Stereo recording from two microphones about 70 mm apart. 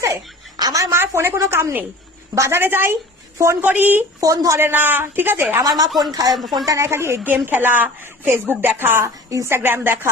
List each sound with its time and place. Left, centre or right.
0.5 s a sound: right
0.8 s a woman's voice: right
3.3 s a woman's voice: right
3.6 s a woman's voice: right
4.2 s a woman's voice: right
4.6 s a woman's voice: right
5.6 s speech: right
6.7 s a woman's voice: right
7.3 s a woman's voice: right
9.3 s a woman's voice: right
9.6 s a woman's voice: right